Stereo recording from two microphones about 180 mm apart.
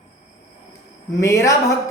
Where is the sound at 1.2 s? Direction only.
20° left (ahead or behind).